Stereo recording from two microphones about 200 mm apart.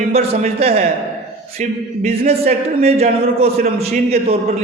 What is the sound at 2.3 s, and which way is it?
A man's voice, 30° right (ahead or behind).